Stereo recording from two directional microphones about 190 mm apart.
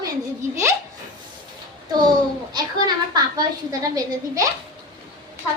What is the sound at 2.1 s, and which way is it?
A child's voice, 20° right (ahead or behind).